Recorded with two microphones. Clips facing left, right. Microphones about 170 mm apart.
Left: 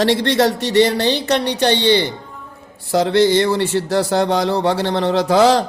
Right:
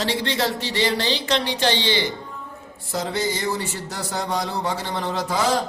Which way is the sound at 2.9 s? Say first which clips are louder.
Left 11 dB; 80° left.